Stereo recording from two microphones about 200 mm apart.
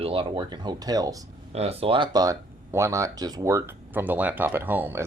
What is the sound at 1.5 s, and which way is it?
Speech, 30° right (ahead or behind).